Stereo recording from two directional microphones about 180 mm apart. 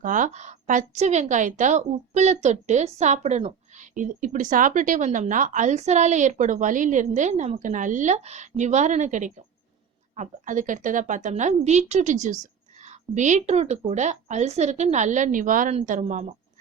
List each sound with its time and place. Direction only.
0.0 s a woman's voice: 45° right (ahead or behind)